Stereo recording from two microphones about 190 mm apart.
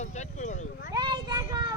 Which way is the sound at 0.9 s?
20° right (ahead or behind).